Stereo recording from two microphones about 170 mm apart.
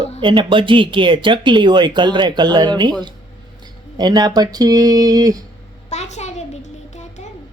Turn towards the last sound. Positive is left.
turn(degrees=45)  # may be behind; listen again after turning